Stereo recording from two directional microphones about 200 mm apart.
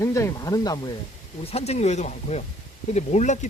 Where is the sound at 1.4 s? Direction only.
30° left (ahead or behind).